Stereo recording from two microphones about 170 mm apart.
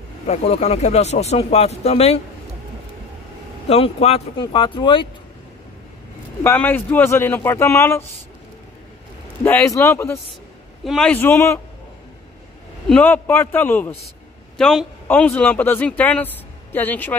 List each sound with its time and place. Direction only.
0.3 s speech: 40° left (ahead or behind)
3.6 s speech: 35° left (ahead or behind)
6.4 s speech: 10° left (ahead or behind)
9.4 s speech: 15° left (ahead or behind)
10.8 s speech: centre (ahead or behind)
12.8 s speech: 10° left (ahead or behind)
14.6 s a man's voice: centre (ahead or behind)